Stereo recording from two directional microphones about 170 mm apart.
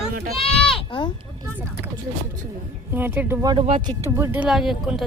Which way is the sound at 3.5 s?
30° right (ahead or behind).